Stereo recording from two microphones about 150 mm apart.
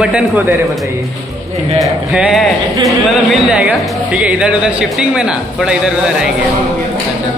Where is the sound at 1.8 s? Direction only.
5° right (ahead or behind).